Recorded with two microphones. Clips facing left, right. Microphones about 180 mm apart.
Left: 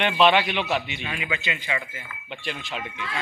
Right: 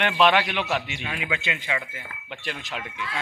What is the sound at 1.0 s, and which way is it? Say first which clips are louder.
Speech: even; centre (ahead or behind).